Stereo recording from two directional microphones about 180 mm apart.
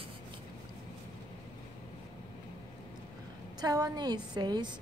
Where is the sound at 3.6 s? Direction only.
20° right (ahead or behind).